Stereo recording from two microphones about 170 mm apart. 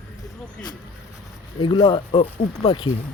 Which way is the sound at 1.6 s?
30° left (ahead or behind).